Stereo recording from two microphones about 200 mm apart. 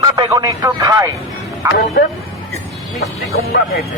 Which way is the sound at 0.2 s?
20° right (ahead or behind).